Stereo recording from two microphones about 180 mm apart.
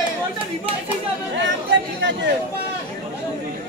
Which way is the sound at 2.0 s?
90° right.